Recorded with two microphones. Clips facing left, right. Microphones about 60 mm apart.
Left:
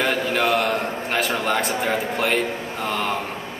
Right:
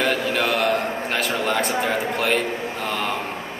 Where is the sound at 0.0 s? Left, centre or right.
Centre.